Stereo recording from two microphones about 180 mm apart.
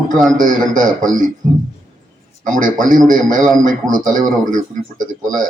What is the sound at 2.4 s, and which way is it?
Speech, 45° right (ahead or behind).